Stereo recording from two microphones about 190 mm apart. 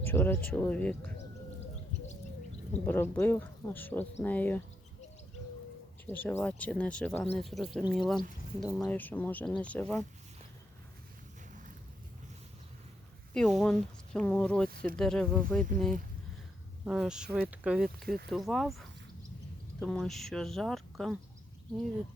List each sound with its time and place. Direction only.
0.0 s speech: 10° left (ahead or behind)
2.8 s speech: 10° left (ahead or behind)
6.1 s speech: 10° left (ahead or behind)
13.3 s speech: centre (ahead or behind)
14.7 s speech: 50° right (ahead or behind)
14.9 s speech: 5° left (ahead or behind)
16.8 s speech: 5° right (ahead or behind)